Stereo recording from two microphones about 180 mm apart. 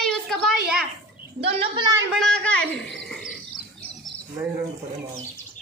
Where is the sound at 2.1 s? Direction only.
5° left (ahead or behind).